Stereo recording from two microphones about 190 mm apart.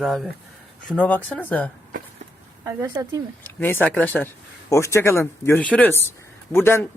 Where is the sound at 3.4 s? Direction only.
10° left (ahead or behind).